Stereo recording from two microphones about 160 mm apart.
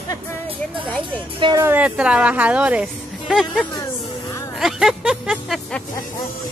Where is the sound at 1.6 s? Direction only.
10° right (ahead or behind).